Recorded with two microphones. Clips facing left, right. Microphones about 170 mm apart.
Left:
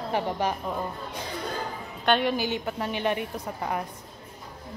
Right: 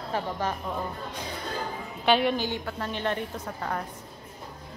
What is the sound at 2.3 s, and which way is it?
A woman's voice, 15° left (ahead or behind).